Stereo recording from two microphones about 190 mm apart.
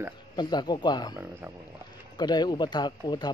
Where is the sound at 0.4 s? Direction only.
25° left (ahead or behind).